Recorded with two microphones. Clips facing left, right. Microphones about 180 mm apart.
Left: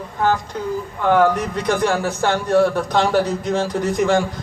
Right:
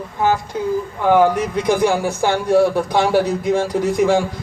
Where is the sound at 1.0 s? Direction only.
10° right (ahead or behind).